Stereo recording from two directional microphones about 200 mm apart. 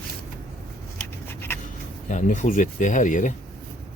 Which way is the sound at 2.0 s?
40° left (ahead or behind).